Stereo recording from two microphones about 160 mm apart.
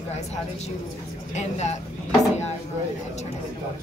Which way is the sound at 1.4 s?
45° left (ahead or behind).